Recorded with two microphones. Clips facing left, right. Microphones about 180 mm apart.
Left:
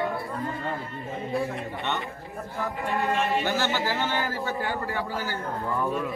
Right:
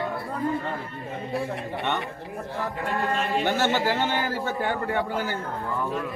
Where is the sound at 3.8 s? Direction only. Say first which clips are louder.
Right 3 dB; 20° right (ahead or behind).